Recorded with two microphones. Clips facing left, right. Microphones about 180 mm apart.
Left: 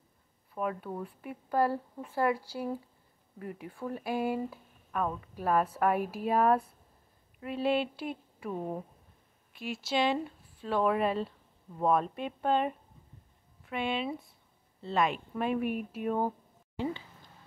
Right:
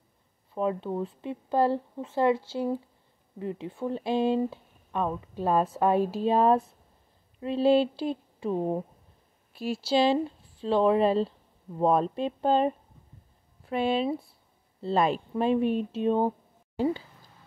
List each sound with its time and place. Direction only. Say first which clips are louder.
0.6 s speech: right 6 dB; 25° right (ahead or behind)
16.7 s speech: right 7 dB; 40° right (ahead or behind)